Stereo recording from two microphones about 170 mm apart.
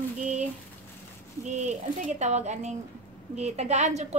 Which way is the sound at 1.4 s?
45° right (ahead or behind).